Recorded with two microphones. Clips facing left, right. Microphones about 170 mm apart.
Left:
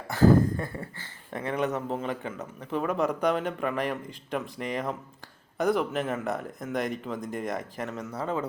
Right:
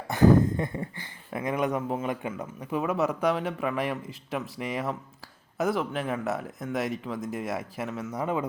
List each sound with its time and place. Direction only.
0.1 s speech: 20° right (ahead or behind); by 8.1 s centre (ahead or behind)
8.1 s speech: 15° right (ahead or behind)